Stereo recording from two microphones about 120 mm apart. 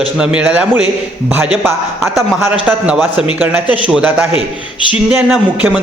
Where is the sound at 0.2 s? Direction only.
10° right (ahead or behind).